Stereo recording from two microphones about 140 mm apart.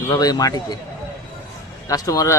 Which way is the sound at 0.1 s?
25° left (ahead or behind).